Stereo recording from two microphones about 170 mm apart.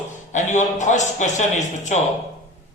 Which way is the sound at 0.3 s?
45° left (ahead or behind).